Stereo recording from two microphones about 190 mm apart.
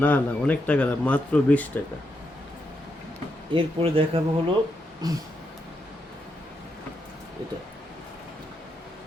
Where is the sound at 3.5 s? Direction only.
30° right (ahead or behind).